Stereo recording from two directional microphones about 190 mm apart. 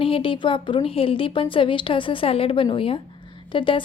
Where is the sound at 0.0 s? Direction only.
30° left (ahead or behind).